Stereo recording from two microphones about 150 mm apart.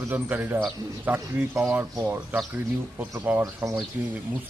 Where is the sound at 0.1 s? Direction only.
10° right (ahead or behind).